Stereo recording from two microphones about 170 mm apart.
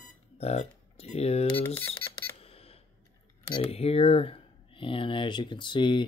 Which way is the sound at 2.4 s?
35° left (ahead or behind).